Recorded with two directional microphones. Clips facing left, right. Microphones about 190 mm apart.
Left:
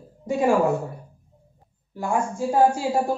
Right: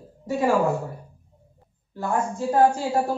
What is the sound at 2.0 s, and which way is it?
A woman's voice, 10° left (ahead or behind).